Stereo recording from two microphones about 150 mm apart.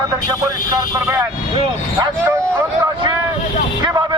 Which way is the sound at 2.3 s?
15° right (ahead or behind).